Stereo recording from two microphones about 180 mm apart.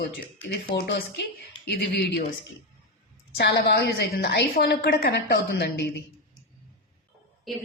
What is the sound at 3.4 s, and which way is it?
A woman's voice, 70° left (ahead or behind).